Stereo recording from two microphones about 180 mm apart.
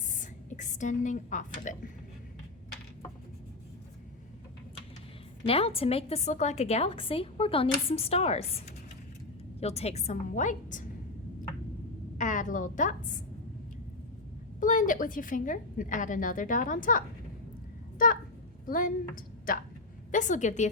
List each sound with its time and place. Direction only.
0.2 s speech: 45° left (ahead or behind)
5.4 s a woman's voice: 30° left (ahead or behind)
12.1 s a woman's voice: 45° left (ahead or behind)
14.6 s a woman's voice: 45° left (ahead or behind)
18.0 s a woman's voice: 50° left (ahead or behind)